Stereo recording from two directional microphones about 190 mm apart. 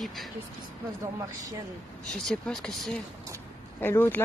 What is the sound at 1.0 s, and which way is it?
Speech, 20° right (ahead or behind).